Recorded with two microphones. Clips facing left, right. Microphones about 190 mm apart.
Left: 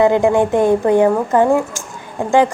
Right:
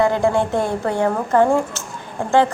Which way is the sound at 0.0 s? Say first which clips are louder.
Left 4 dB; 15° left (ahead or behind).